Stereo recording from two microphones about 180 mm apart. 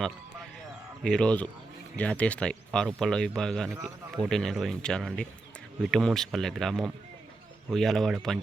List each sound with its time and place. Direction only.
1.0 s speech: 5° left (ahead or behind)